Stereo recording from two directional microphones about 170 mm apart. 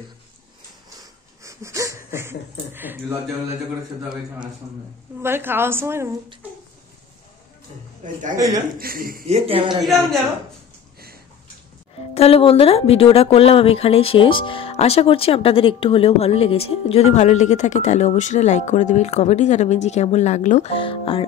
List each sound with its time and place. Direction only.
1.4 s a sound: 20° right (ahead or behind)
5.2 s a woman's voice: 15° right (ahead or behind)
8.0 s a man's voice: 50° right (ahead or behind)
8.7 s a man's voice: 60° right (ahead or behind)
9.3 s speech: 35° right (ahead or behind)
12.1 s speech: 35° left (ahead or behind)
20.7 s speech: 30° left (ahead or behind)